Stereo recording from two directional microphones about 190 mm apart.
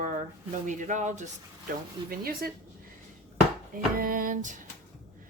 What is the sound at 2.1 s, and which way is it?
Speech, 50° right (ahead or behind).